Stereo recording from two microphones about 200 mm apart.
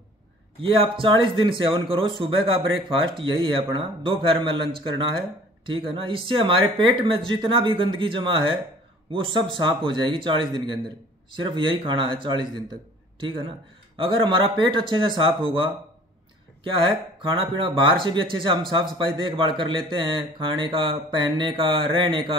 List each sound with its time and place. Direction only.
0.6 s speech: 25° right (ahead or behind)
5.7 s speech: 25° right (ahead or behind)
13.9 s speech: 25° right (ahead or behind)
16.8 s speech: 25° right (ahead or behind)